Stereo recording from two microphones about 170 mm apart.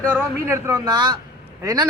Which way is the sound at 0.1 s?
15° right (ahead or behind).